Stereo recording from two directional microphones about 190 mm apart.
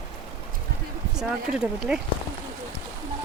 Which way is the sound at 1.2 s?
5° right (ahead or behind).